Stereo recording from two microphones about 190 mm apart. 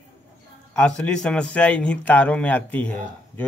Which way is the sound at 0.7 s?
5° left (ahead or behind).